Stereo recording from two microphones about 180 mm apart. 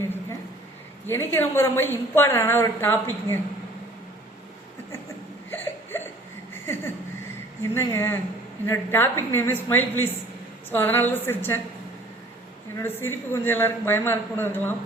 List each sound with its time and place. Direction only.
1.0 s a woman's voice: 15° left (ahead or behind)
5.5 s a sound: 15° left (ahead or behind)
7.6 s a woman's voice: 15° left (ahead or behind)
12.7 s a woman's voice: 10° left (ahead or behind)